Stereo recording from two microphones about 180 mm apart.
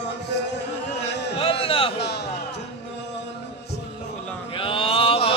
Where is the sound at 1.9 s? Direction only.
65° left (ahead or behind).